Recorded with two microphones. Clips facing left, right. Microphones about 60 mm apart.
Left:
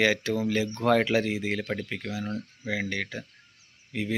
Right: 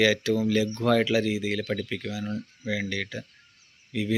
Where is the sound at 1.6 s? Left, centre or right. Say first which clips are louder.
Right 2 dB; left.